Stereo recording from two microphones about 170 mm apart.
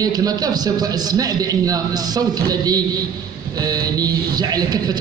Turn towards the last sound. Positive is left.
turn(degrees=-20)  # may be behind; listen again after turning